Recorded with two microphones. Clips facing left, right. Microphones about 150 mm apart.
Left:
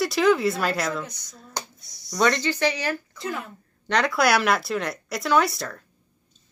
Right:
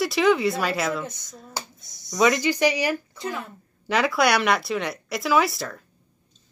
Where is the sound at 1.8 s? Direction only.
20° right (ahead or behind).